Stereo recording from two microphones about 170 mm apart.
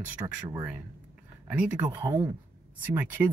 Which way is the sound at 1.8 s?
25° right (ahead or behind).